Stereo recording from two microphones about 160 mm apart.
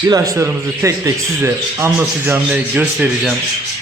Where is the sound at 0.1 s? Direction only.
15° right (ahead or behind).